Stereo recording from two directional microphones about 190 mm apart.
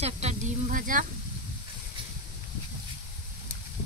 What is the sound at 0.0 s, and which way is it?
Sizzle, 35° right (ahead or behind).